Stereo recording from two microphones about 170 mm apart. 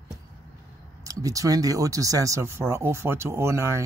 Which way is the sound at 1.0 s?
20° right (ahead or behind).